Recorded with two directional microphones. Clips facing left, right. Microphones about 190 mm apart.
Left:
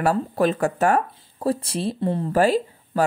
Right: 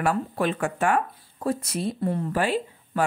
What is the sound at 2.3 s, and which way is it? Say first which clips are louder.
Speech: left 6 dB; 40° left (ahead or behind).